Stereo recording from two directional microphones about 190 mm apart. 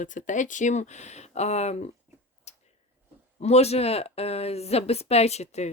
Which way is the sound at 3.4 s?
35° left (ahead or behind).